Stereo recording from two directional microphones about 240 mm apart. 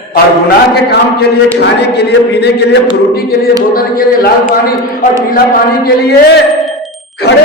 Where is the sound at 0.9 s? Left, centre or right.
Left.